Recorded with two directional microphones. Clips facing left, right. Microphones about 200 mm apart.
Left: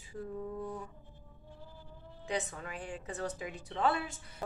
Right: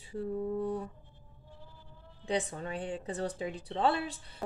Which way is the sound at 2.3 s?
35° right (ahead or behind).